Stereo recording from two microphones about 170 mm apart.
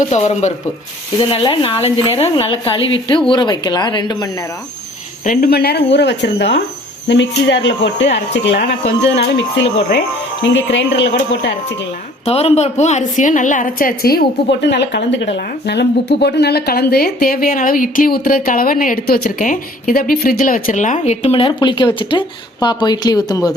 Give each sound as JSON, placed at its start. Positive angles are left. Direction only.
{"t": 0.1, "sound": "a woman's voice", "side_deg": 40}
{"t": 1.2, "sound": "a woman's voice", "side_deg": 30}
{"t": 5.2, "sound": "speech", "side_deg": 55}
{"t": 12.2, "sound": "a woman's voice", "side_deg": 35}